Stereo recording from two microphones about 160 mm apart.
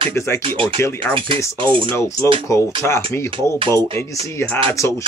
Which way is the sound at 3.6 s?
25° right (ahead or behind).